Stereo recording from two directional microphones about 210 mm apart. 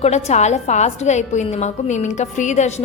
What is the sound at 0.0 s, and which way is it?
A woman's voice, 30° left (ahead or behind).